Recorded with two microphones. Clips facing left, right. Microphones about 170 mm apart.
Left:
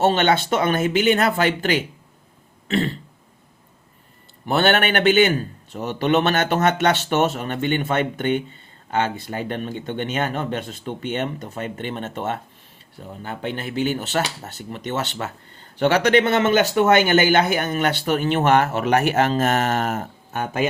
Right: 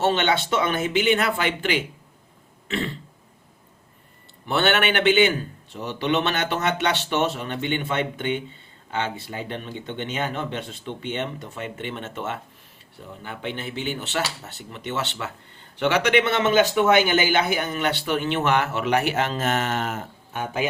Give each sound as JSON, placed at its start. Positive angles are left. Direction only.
{"t": 0.0, "sound": "a man's voice", "side_deg": 45}
{"t": 4.4, "sound": "a man's voice", "side_deg": 40}